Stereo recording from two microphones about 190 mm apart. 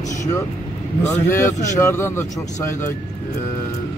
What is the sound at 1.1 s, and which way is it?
A man's voice, 15° left (ahead or behind).